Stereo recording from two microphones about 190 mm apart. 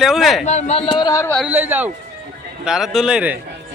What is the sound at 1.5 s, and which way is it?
A man's voice, 10° right (ahead or behind).